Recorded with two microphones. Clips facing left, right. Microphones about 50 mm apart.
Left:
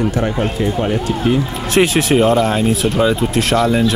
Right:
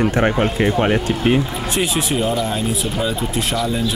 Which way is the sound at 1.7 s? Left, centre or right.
Left.